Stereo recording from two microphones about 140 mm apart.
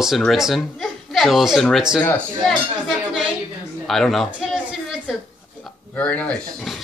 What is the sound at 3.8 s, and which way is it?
Speech, centre (ahead or behind).